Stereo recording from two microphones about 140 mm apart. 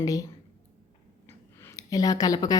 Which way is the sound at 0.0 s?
25° left (ahead or behind).